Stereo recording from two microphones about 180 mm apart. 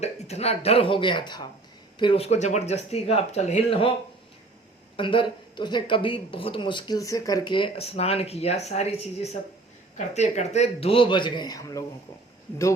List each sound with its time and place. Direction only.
0.0 s speech: 35° left (ahead or behind)
4.9 s speech: 30° left (ahead or behind)